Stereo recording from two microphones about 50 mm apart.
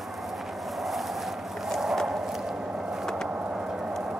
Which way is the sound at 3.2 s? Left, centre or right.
Right.